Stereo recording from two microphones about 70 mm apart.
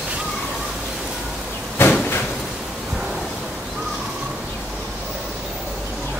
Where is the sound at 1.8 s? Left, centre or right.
Left.